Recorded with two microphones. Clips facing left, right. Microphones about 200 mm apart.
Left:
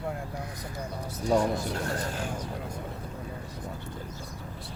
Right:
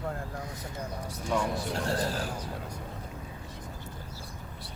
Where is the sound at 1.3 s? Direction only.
40° left (ahead or behind).